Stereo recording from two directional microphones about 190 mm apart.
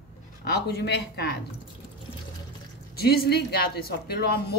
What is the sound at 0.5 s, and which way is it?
Speech, 60° left (ahead or behind).